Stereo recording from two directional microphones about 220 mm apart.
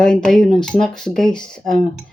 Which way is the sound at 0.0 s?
5° left (ahead or behind).